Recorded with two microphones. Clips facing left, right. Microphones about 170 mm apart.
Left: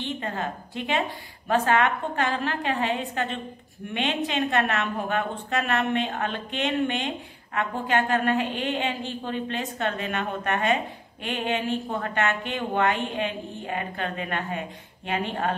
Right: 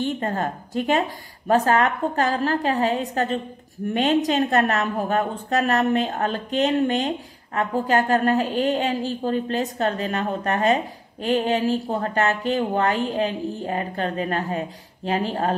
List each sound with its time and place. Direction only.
0.0 s a woman's voice: 45° right (ahead or behind)